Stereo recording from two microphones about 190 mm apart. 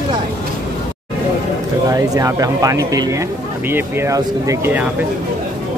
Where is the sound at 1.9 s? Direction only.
15° right (ahead or behind).